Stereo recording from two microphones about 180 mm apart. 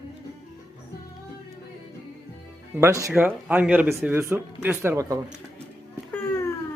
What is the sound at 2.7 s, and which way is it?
Speech, 15° right (ahead or behind).